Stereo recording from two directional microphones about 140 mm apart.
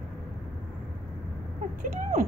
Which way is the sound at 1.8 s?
65° right (ahead or behind).